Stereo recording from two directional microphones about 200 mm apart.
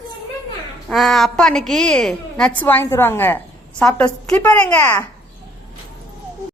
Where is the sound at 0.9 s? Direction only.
Centre (ahead or behind).